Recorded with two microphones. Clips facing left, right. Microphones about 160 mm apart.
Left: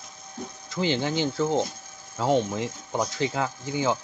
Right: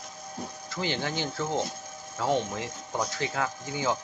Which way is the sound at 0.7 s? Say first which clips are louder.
Left 6 dB; 20° left (ahead or behind).